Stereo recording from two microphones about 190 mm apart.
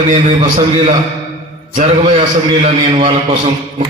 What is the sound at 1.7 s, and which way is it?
A man's voice, 35° right (ahead or behind).